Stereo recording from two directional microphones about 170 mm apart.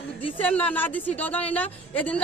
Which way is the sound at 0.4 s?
10° left (ahead or behind).